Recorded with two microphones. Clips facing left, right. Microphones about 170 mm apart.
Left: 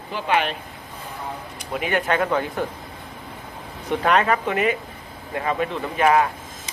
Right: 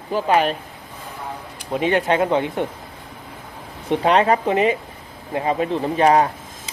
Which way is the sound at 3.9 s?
25° right (ahead or behind).